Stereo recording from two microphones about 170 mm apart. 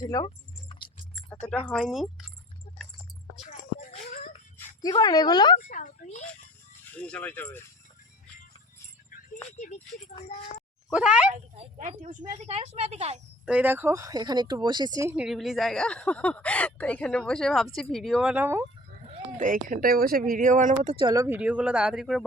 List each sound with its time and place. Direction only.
0.0 s a woman's voice: 20° left (ahead or behind)
1.3 s speech: 5° left (ahead or behind)
4.8 s a woman's voice: 25° left (ahead or behind)
5.5 s a woman's voice: 45° left (ahead or behind)
6.9 s speech: 10° left (ahead or behind)
9.5 s speech: 45° left (ahead or behind)
10.9 s speech: 5° right (ahead or behind)
11.8 s speech: 45° right (ahead or behind)
13.4 s speech: 5° right (ahead or behind)
15.1 s speech: 5° right (ahead or behind)
19.0 s a sound: 35° right (ahead or behind)
19.5 s speech: 55° right (ahead or behind)
20.9 s speech: 25° right (ahead or behind)
21.2 s speech: 10° right (ahead or behind)